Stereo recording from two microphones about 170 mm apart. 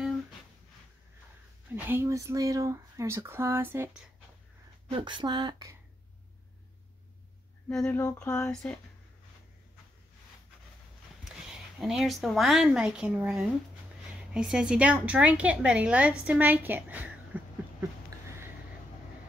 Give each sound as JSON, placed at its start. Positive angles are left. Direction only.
{"t": 1.8, "sound": "speech", "side_deg": -15}
{"t": 4.9, "sound": "speech", "side_deg": -30}
{"t": 7.7, "sound": "speech", "side_deg": 5}
{"t": 11.2, "sound": "a woman's voice", "side_deg": 0}